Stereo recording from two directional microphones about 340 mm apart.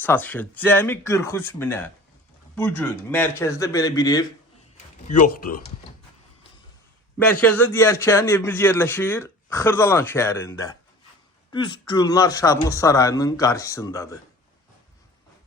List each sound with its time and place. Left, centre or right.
0.0 s a man's voice: centre
5.0 s speech: left
7.4 s a man's voice: centre